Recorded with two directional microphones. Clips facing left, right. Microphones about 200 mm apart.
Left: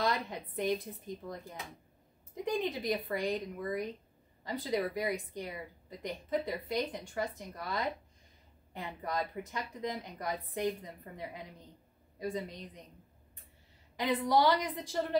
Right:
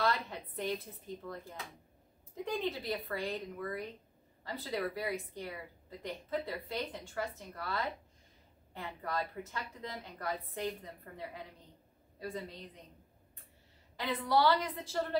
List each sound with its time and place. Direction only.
0.0 s a woman's voice: 15° left (ahead or behind)
13.9 s a woman's voice: 15° left (ahead or behind)